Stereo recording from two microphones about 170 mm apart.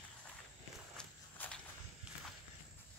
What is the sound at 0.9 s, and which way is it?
Walk, 5° left (ahead or behind).